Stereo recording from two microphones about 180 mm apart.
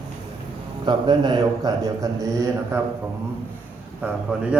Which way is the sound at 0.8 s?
25° right (ahead or behind).